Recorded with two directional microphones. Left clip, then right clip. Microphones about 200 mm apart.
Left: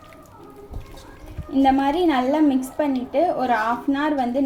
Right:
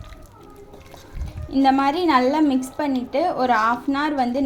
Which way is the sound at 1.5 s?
35° right (ahead or behind).